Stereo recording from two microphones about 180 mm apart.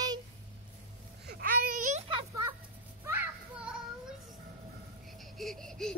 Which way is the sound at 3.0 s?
10° right (ahead or behind).